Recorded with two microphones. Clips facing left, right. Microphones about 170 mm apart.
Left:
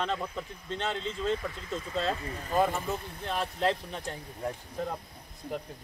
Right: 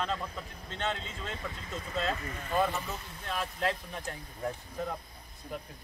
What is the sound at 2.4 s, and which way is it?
Speech, 40° left (ahead or behind).